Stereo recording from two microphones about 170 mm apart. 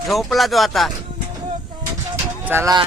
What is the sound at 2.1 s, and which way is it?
Pigeon, 15° right (ahead or behind).